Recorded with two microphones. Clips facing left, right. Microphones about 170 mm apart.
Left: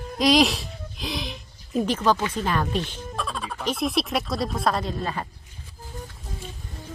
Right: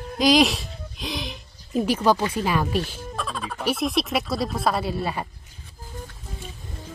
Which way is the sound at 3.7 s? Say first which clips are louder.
Left 1 dB; centre (ahead or behind).